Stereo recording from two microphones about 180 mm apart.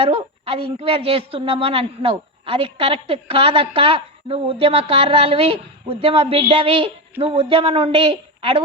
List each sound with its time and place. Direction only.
0.0 s a woman's voice: 35° right (ahead or behind)